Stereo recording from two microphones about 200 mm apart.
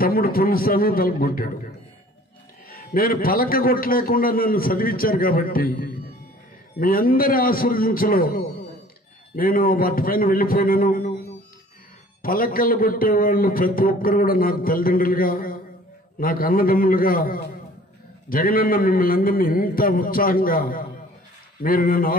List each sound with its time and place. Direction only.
0.0 s a man's voice: 50° left (ahead or behind)
2.7 s a man's voice: 45° left (ahead or behind)
12.2 s a man's voice: 45° left (ahead or behind)